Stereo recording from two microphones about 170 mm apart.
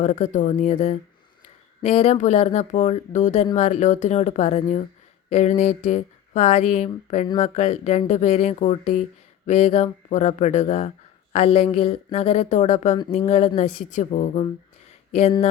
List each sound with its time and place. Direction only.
0.0 s speech: 40° left (ahead or behind)